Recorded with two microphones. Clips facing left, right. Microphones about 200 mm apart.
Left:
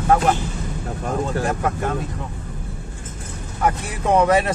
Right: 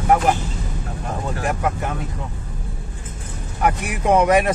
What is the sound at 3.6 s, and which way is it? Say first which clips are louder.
Speech: right 2 dB; 15° right (ahead or behind).